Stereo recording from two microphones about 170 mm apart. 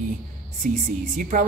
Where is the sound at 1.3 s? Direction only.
45° right (ahead or behind).